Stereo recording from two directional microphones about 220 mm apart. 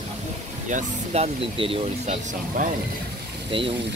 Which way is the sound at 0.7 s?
30° right (ahead or behind).